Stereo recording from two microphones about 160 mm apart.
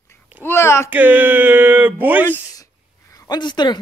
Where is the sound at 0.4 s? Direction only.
15° left (ahead or behind).